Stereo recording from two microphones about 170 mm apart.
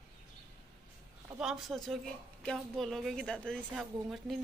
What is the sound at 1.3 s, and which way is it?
Speech, 5° right (ahead or behind).